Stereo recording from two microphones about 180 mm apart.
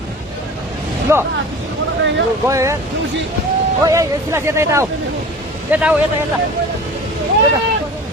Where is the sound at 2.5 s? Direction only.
15° right (ahead or behind).